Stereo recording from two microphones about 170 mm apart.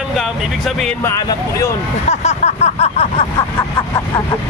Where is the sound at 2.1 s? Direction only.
40° left (ahead or behind).